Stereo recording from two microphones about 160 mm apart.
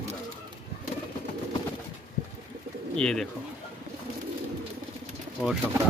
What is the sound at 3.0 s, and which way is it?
Speech, 5° left (ahead or behind).